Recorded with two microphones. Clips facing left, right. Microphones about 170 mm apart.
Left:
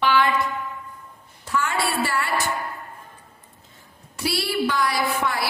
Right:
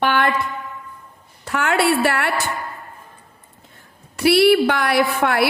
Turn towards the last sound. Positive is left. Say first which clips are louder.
# right 6 dB
turn(degrees=-65)  # may be behind; listen again after turning